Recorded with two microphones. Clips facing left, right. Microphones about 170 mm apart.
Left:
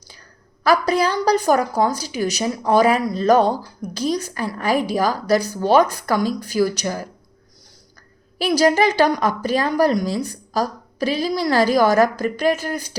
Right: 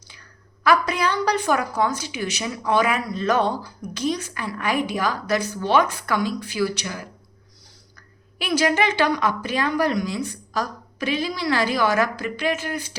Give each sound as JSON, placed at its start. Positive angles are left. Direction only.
{"t": 0.6, "sound": "a woman's voice", "side_deg": 35}
{"t": 8.4, "sound": "a woman's voice", "side_deg": 35}